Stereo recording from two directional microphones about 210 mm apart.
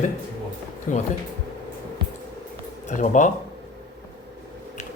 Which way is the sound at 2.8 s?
35° left (ahead or behind).